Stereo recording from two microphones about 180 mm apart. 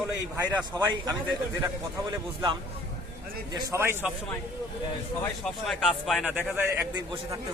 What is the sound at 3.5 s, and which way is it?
Speech, 15° right (ahead or behind).